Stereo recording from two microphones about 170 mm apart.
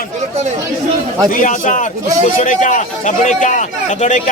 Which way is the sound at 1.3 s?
50° left (ahead or behind).